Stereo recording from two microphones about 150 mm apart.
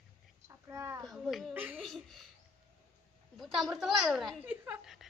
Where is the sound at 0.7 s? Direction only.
20° right (ahead or behind).